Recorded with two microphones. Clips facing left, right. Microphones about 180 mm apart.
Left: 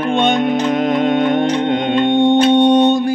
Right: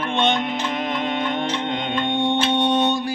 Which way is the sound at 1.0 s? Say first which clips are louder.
Left 10 dB; 50° left (ahead or behind).